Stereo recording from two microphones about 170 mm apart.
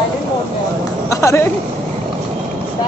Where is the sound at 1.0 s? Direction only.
15° left (ahead or behind).